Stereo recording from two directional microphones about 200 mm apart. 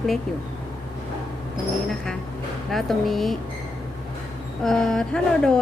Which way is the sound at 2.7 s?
Centre (ahead or behind).